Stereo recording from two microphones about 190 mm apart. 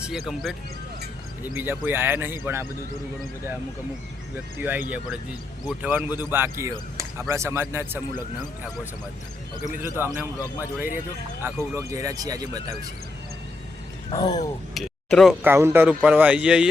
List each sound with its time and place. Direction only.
0.0 s speech: centre (ahead or behind)
1.5 s speech: 10° right (ahead or behind)
4.6 s speech: 10° right (ahead or behind)
9.7 s speech: 10° right (ahead or behind)
11.4 s speech: 15° right (ahead or behind)
14.1 s speech: 20° left (ahead or behind)
14.8 s speech: centre (ahead or behind)
15.4 s speech: 10° right (ahead or behind)